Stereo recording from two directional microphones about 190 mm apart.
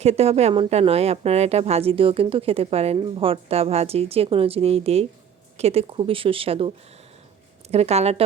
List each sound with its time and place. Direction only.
0.0 s a woman's voice: 35° right (ahead or behind)